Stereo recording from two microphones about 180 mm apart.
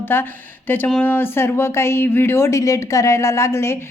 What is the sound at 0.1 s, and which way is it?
A woman's voice, 10° left (ahead or behind).